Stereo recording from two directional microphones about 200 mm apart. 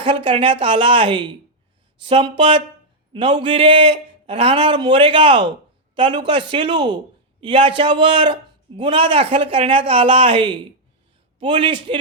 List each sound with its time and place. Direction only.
0.0 s a man's voice: 25° right (ahead or behind)